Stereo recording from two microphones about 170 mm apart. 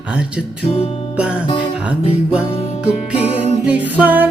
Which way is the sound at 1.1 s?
5° right (ahead or behind).